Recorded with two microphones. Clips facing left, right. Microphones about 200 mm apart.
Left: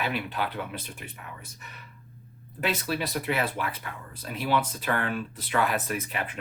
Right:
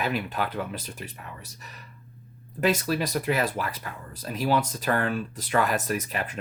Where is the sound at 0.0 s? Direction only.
45° right (ahead or behind).